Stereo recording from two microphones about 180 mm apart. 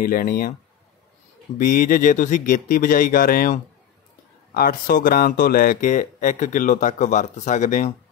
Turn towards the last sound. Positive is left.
turn(degrees=45)  # may be behind; listen again after turning